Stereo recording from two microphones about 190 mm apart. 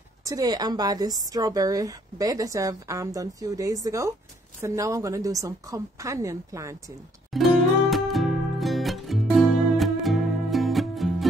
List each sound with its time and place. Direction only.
0.2 s a woman's voice: 20° right (ahead or behind)
7.3 s music: centre (ahead or behind)